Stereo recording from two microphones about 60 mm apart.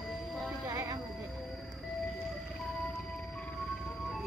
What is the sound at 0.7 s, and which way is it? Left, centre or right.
Music, right.